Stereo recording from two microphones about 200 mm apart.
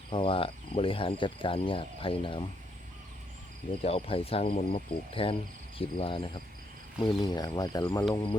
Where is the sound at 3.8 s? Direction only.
30° left (ahead or behind).